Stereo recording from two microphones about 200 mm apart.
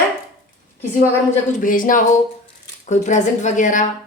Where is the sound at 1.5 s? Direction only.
40° left (ahead or behind).